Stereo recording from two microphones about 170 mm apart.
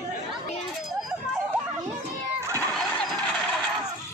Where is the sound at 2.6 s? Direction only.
5° left (ahead or behind).